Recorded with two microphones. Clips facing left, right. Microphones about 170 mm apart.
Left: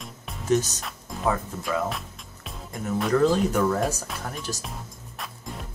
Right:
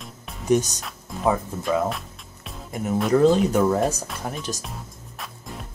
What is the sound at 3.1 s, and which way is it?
Speech, 20° right (ahead or behind).